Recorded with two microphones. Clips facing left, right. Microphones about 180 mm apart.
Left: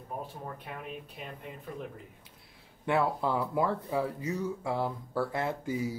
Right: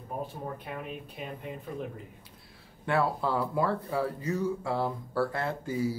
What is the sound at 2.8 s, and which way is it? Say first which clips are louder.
Speech: even; 20° left (ahead or behind).